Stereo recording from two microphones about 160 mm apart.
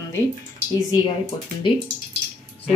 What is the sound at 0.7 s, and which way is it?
Speech, 25° left (ahead or behind).